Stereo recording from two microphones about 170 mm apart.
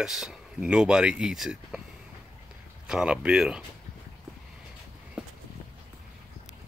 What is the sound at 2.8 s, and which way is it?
Speech, 5° right (ahead or behind).